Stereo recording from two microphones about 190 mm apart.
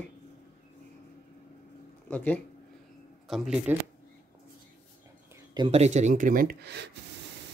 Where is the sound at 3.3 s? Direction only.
5° right (ahead or behind).